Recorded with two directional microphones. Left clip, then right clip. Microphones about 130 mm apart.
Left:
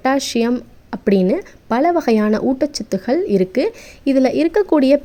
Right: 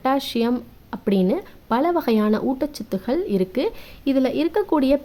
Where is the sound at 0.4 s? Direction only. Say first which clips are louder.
Left 4 dB; 25° left (ahead or behind).